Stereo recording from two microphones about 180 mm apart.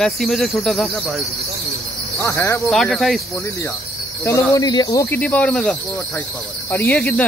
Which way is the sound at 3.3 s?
15° left (ahead or behind).